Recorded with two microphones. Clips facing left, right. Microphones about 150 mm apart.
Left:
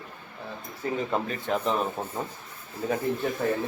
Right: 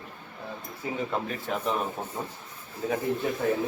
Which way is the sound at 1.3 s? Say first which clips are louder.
Left 3 dB; 5° right (ahead or behind).